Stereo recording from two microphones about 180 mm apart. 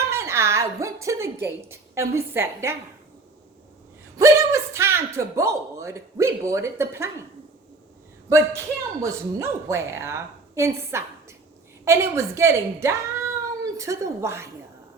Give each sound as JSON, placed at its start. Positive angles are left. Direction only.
{"t": 0.2, "sound": "a woman's voice", "side_deg": -15}
{"t": 4.2, "sound": "speech", "side_deg": -15}
{"t": 8.3, "sound": "speech", "side_deg": -15}